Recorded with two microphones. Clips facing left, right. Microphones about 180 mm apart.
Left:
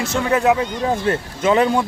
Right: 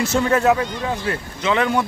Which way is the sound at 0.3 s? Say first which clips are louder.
Left 2 dB; 15° left (ahead or behind).